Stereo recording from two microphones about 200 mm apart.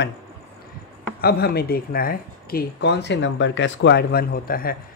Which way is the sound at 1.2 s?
50° left (ahead or behind).